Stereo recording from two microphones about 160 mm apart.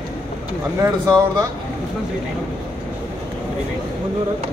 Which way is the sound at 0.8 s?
20° right (ahead or behind).